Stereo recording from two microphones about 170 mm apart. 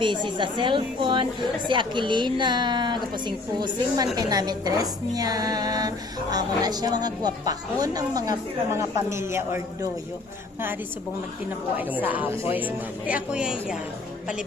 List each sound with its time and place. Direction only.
0.0 s a woman's voice: 30° right (ahead or behind)
11.8 s speech: 10° right (ahead or behind)